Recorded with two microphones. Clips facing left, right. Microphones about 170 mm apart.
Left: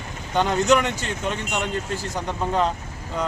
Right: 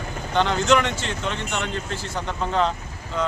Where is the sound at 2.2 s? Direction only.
10° left (ahead or behind).